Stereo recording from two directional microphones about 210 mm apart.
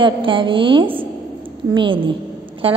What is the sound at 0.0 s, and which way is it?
A woman's voice, 25° right (ahead or behind).